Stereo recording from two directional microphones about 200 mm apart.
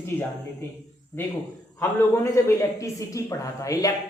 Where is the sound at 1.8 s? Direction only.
15° left (ahead or behind).